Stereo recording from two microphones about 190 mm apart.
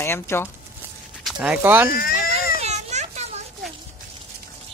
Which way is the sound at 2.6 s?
35° right (ahead or behind).